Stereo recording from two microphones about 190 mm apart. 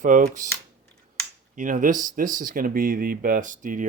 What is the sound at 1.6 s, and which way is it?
Speech, 45° right (ahead or behind).